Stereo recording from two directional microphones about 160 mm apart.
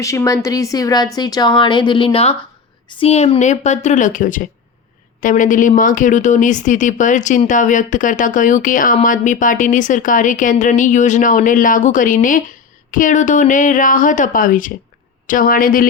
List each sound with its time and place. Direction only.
0.0 s speech: 20° left (ahead or behind); by 15.9 s 60° left (ahead or behind)